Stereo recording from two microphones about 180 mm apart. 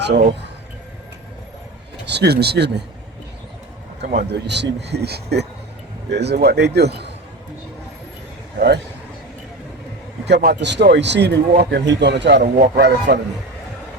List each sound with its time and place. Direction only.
0.0 s speech: 65° right (ahead or behind)
2.0 s speech: 65° right (ahead or behind)
4.0 s speech: 45° right (ahead or behind)
4.3 s speech: 75° right (ahead or behind)
8.5 s speech: 65° right (ahead or behind)
10.2 s a man's voice: 65° right (ahead or behind)